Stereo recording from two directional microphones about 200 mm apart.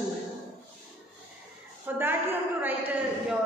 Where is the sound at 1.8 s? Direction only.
10° right (ahead or behind).